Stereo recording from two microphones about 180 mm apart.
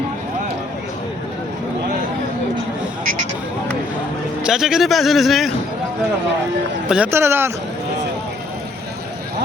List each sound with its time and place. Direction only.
3.0 s a sound: 50° right (ahead or behind)
4.4 s a man's voice: 5° right (ahead or behind)
6.8 s speech: 5° right (ahead or behind)